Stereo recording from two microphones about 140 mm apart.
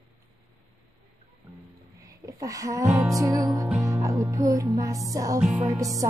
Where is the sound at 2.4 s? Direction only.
25° right (ahead or behind).